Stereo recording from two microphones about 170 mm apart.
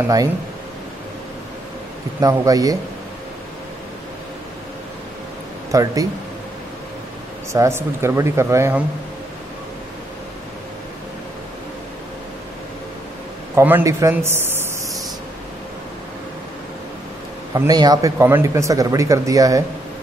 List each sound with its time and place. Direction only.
2.1 s speech: 20° right (ahead or behind)
5.7 s speech: 20° right (ahead or behind)
7.5 s speech: 15° right (ahead or behind)
13.6 s speech: 15° right (ahead or behind)
17.6 s speech: 20° right (ahead or behind)